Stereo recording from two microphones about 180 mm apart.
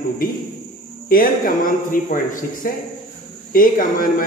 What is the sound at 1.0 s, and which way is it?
A man's voice, 50° left (ahead or behind).